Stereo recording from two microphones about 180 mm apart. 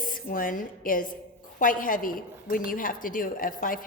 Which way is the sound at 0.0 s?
50° left (ahead or behind).